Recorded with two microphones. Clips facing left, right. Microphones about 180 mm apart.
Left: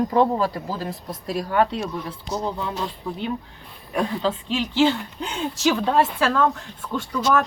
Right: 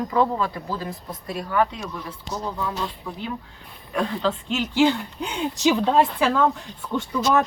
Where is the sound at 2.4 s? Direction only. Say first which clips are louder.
Even; 25° left (ahead or behind).